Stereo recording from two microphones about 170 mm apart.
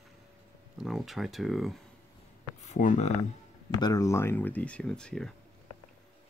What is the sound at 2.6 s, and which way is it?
Speech, 45° left (ahead or behind).